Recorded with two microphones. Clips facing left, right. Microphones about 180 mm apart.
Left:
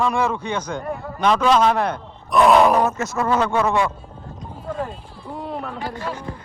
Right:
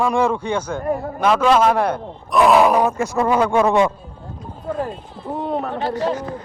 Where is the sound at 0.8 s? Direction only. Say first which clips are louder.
Right 6 dB; 45° right (ahead or behind).